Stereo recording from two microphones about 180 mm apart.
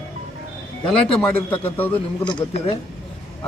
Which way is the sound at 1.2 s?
10° left (ahead or behind).